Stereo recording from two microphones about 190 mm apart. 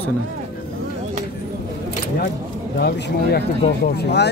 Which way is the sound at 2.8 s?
60° left (ahead or behind).